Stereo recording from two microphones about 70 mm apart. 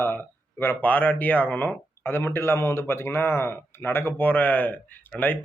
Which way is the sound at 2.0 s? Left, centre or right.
Left.